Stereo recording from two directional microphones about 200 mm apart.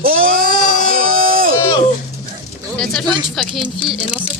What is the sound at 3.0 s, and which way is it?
Speech, 20° right (ahead or behind).